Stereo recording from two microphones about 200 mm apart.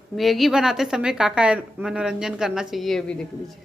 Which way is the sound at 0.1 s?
Centre (ahead or behind).